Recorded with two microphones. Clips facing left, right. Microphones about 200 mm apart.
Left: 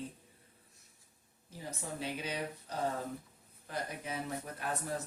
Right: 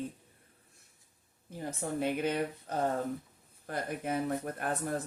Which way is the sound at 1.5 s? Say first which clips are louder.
Right 7 dB; 55° right (ahead or behind).